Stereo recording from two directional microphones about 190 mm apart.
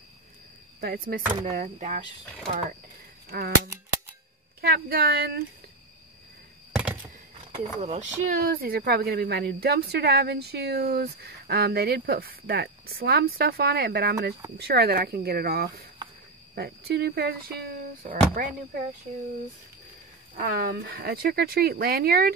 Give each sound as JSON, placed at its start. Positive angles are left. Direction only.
{"t": 0.7, "sound": "cricket", "side_deg": -50}
{"t": 1.3, "sound": "speech", "side_deg": -35}
{"t": 3.3, "sound": "speech", "side_deg": -55}
{"t": 7.7, "sound": "speech", "side_deg": -40}
{"t": 20.3, "sound": "speech", "side_deg": -45}